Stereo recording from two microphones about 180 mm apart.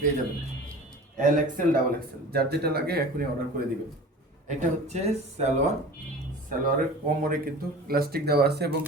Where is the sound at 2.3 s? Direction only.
60° right (ahead or behind).